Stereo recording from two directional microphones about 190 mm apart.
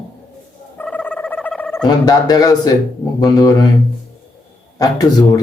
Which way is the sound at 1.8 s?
20° left (ahead or behind).